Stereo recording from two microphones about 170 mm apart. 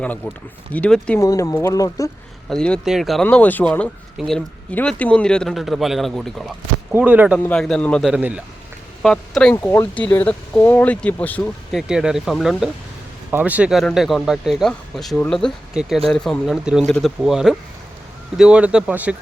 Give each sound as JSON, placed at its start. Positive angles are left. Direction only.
{"t": 0.7, "sound": "speech", "side_deg": 5}
{"t": 1.2, "sound": "speech", "side_deg": 20}
{"t": 2.5, "sound": "speech", "side_deg": 5}
{"t": 6.9, "sound": "speech", "side_deg": -10}
{"t": 7.3, "sound": "speech", "side_deg": 5}
{"t": 8.0, "sound": "speech", "side_deg": -5}